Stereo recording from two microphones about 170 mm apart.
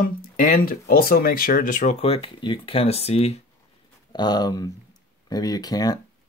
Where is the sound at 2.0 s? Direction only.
35° left (ahead or behind).